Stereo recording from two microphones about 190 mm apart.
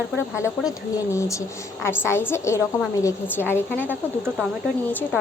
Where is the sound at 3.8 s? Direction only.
10° right (ahead or behind).